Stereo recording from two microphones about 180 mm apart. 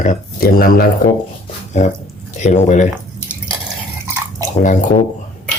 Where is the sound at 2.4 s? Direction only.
40° left (ahead or behind).